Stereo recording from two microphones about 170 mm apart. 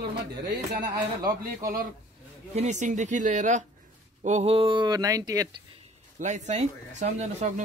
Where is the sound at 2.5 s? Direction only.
40° right (ahead or behind); by 5.5 s 20° right (ahead or behind).